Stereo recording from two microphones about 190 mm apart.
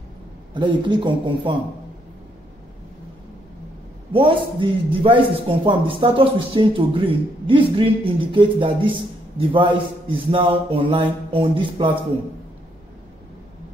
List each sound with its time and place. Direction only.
0.6 s a man's voice: 25° right (ahead or behind)
4.1 s a man's voice: 25° right (ahead or behind)